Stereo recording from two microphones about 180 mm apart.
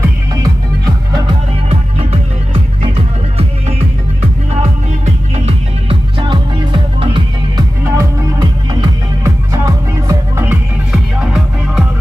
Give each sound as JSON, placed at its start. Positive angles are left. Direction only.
{"t": 1.1, "sound": "music", "side_deg": -30}
{"t": 4.6, "sound": "music", "side_deg": -40}
{"t": 7.8, "sound": "music", "side_deg": -15}
{"t": 9.2, "sound": "music", "side_deg": -20}
{"t": 10.5, "sound": "music", "side_deg": -5}